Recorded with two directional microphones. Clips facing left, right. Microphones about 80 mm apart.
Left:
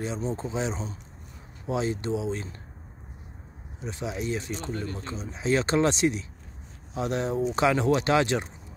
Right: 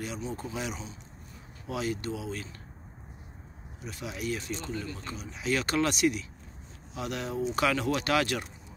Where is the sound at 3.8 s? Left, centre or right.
Left.